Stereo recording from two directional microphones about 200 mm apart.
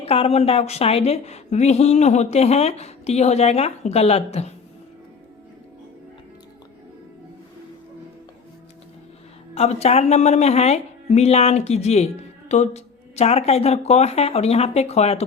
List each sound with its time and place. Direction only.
0.0 s speech: 30° left (ahead or behind)
9.6 s speech: 30° left (ahead or behind)